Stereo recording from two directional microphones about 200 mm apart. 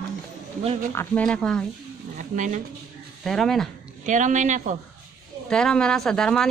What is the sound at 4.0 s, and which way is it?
Speech, 40° right (ahead or behind).